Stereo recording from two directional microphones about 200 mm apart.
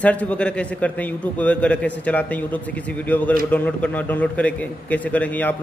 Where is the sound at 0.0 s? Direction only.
5° left (ahead or behind).